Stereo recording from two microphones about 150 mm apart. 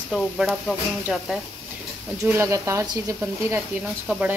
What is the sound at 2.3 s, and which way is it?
Speech, 20° right (ahead or behind).